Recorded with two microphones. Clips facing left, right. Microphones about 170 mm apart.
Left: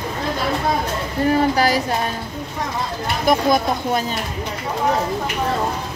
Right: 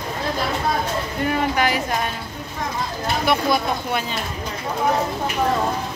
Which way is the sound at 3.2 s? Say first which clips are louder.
Left 4 dB; 40° left (ahead or behind).